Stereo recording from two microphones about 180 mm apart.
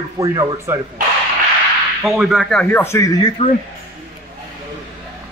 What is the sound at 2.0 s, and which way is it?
Speech, centre (ahead or behind).